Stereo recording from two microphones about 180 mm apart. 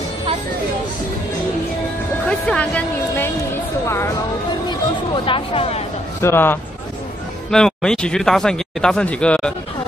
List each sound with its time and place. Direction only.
2.2 s speech: 5° left (ahead or behind)
4.6 s speech: 25° left (ahead or behind)
6.2 s speech: 10° left (ahead or behind)